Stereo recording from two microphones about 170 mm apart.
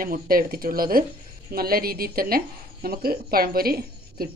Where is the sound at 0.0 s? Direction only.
55° right (ahead or behind).